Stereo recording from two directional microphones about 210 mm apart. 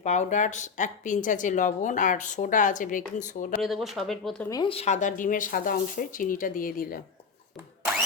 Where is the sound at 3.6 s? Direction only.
Centre (ahead or behind).